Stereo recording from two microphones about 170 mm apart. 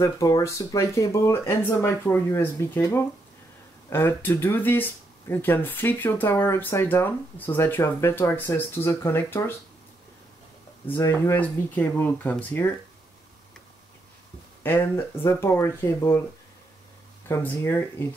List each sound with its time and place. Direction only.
0.0 s speech: 20° left (ahead or behind)
10.9 s speech: 15° left (ahead or behind)
14.6 s speech: 15° left (ahead or behind)
17.3 s speech: 15° left (ahead or behind)